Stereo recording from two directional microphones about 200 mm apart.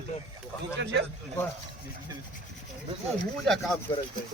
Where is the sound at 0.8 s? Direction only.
60° right (ahead or behind).